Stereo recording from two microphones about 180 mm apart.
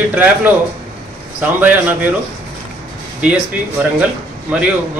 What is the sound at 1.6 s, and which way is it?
Speech, 10° right (ahead or behind).